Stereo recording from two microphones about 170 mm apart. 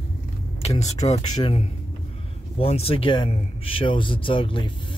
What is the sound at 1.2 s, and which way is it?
Speech, 25° left (ahead or behind).